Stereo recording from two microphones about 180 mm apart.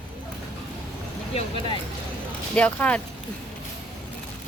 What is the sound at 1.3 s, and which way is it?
Speech, 30° left (ahead or behind).